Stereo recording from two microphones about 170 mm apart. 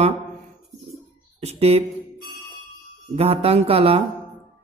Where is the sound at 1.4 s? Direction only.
40° right (ahead or behind).